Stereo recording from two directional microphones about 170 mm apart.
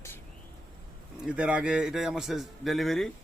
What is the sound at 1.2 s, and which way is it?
A man's voice, 5° right (ahead or behind).